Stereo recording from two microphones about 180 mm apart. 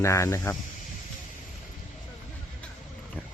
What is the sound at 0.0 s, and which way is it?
Speech, 15° left (ahead or behind).